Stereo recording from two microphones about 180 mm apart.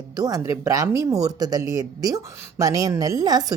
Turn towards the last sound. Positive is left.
turn(degrees=-20)  # may be behind; listen again after turning